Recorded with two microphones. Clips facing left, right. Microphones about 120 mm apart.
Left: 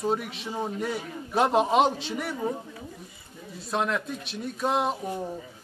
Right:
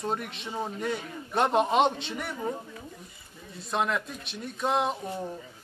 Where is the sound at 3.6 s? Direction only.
Centre (ahead or behind).